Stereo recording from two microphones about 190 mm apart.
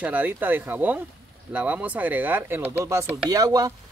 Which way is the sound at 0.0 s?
10° right (ahead or behind).